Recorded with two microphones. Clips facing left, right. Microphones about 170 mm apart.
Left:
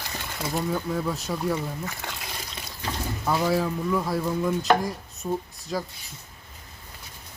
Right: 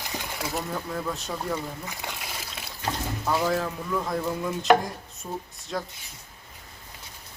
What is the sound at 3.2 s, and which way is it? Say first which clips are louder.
Speech: left 2 dB; 5° left (ahead or behind).